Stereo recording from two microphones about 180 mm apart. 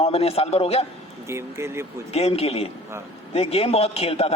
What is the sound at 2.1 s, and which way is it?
A man's voice, 35° left (ahead or behind).